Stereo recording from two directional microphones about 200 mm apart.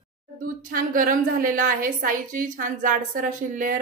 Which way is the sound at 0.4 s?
45° right (ahead or behind).